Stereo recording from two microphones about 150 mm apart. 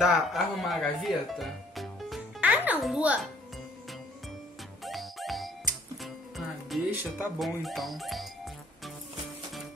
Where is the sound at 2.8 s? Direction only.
5° right (ahead or behind).